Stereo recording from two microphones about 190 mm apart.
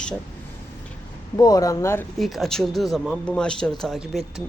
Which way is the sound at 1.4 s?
20° left (ahead or behind).